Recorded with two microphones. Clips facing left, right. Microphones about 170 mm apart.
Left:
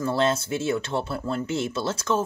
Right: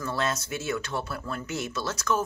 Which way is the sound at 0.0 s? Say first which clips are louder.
Left 6 dB; 30° left (ahead or behind).